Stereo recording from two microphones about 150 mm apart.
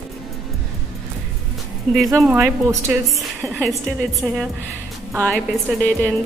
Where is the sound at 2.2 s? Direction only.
10° right (ahead or behind); by 6.1 s 5° left (ahead or behind).